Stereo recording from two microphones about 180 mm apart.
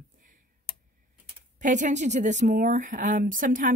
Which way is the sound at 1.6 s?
45° right (ahead or behind).